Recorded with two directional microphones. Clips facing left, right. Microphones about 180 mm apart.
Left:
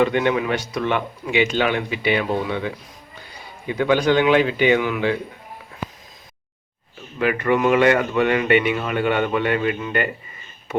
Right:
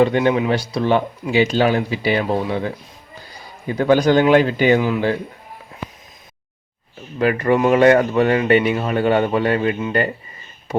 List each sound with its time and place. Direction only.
0.0 s speech: 30° right (ahead or behind)
7.2 s speech: 35° right (ahead or behind)